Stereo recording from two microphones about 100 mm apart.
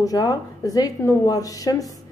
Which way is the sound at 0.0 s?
40° left (ahead or behind).